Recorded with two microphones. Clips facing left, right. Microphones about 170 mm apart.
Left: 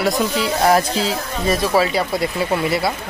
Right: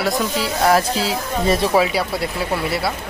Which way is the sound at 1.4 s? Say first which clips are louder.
Right 1 dB; 25° right (ahead or behind).